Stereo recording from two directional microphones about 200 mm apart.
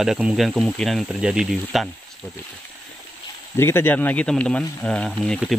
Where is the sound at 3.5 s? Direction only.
10° left (ahead or behind).